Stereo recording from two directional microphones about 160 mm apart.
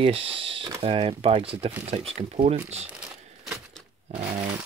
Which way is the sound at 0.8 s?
35° right (ahead or behind).